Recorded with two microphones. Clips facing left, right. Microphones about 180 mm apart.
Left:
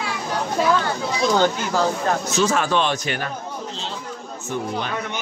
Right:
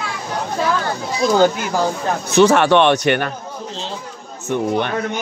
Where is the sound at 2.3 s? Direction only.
65° right (ahead or behind).